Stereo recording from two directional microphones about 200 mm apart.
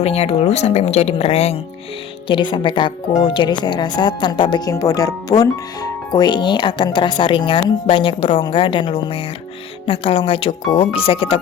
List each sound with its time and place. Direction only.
0.0 s speech: 30° left (ahead or behind)